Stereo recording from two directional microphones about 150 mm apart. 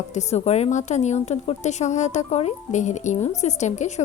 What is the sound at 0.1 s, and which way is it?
A woman's voice, 50° left (ahead or behind).